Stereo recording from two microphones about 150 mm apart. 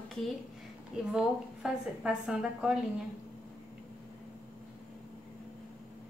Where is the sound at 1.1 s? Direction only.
5° right (ahead or behind).